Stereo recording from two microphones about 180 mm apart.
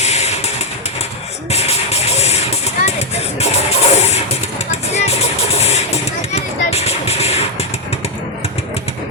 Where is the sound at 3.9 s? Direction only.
35° left (ahead or behind).